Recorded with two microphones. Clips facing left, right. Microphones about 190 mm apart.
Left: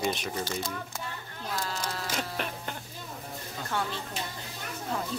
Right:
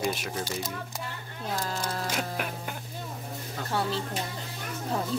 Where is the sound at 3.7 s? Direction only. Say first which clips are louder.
Right 3 dB; 35° right (ahead or behind).